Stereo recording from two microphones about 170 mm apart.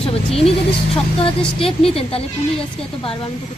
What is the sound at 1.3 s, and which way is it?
A woman's voice, 35° left (ahead or behind).